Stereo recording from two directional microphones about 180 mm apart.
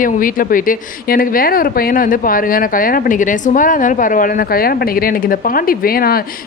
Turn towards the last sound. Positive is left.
turn(degrees=55)  # may be behind; listen again after turning